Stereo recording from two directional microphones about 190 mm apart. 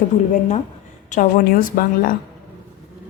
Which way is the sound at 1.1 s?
45° left (ahead or behind).